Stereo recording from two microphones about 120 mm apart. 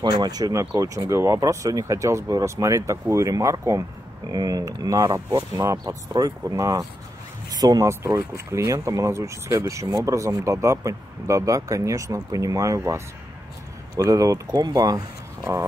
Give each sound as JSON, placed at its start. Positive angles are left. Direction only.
{"t": 0.0, "sound": "speech", "side_deg": -35}